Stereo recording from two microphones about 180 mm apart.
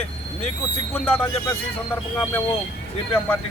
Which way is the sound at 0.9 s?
10° left (ahead or behind).